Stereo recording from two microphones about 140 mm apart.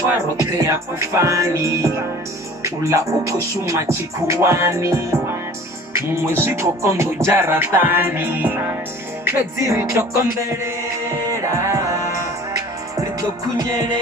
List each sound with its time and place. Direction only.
0.1 s music: 20° right (ahead or behind)
11.2 s music: 20° right (ahead or behind)